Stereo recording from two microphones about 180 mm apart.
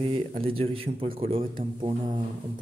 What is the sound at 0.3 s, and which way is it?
Speech, 30° right (ahead or behind).